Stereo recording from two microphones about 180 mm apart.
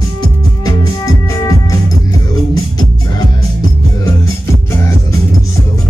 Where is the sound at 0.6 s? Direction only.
20° left (ahead or behind).